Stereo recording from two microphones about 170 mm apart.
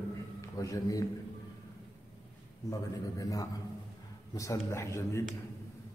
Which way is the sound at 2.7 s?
20° left (ahead or behind).